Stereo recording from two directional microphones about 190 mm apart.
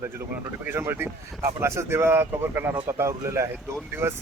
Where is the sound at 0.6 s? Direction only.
10° right (ahead or behind).